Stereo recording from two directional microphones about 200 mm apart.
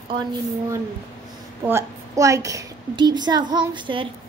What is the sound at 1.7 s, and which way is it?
A woman's voice, 15° right (ahead or behind).